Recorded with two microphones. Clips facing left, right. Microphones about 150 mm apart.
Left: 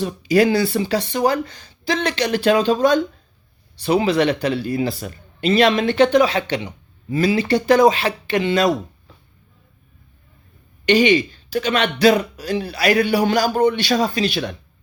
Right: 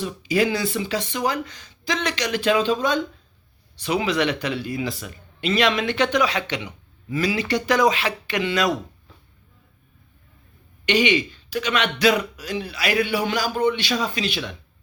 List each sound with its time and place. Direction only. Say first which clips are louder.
0.0 s speech: left 5 dB; 40° left (ahead or behind)
10.8 s speech: left 5 dB; 35° left (ahead or behind)